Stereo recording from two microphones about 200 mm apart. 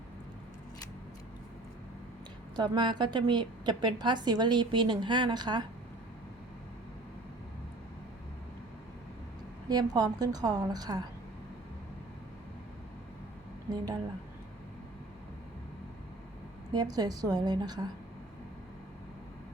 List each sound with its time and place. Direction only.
2.6 s a woman's voice: 20° right (ahead or behind)
9.6 s a woman's voice: 20° right (ahead or behind)
13.7 s a woman's voice: 20° right (ahead or behind)
16.7 s a woman's voice: 20° right (ahead or behind)